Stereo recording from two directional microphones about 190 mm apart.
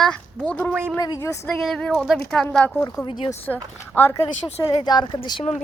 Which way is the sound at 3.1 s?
25° left (ahead or behind).